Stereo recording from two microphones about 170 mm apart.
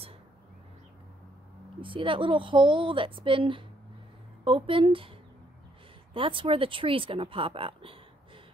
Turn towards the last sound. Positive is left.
turn(degrees=-30)  # may be behind; listen again after turning